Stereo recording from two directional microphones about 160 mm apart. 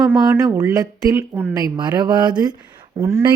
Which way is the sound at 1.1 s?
15° right (ahead or behind).